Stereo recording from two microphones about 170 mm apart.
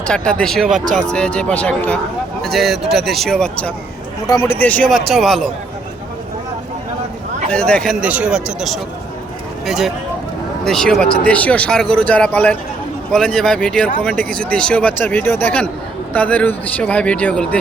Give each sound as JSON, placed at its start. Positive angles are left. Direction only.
{"t": 0.1, "sound": "speech", "side_deg": 5}
{"t": 4.3, "sound": "speech", "side_deg": 20}
{"t": 4.5, "sound": "speech", "side_deg": 10}
{"t": 7.5, "sound": "speech", "side_deg": 5}
{"t": 8.0, "sound": "speech", "side_deg": -5}